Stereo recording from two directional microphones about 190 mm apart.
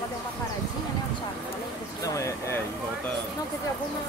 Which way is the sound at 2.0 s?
15° left (ahead or behind).